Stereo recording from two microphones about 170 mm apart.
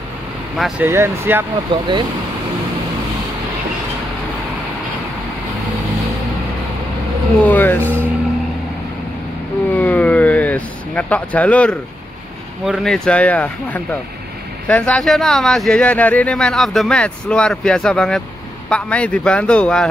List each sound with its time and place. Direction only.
0.6 s speech: centre (ahead or behind)
0.8 s speech: 15° right (ahead or behind)
1.7 s speech: 30° right (ahead or behind)
7.4 s speech: 10° left (ahead or behind)
9.8 s vehicle: 10° left (ahead or behind)
12.6 s speech: centre (ahead or behind)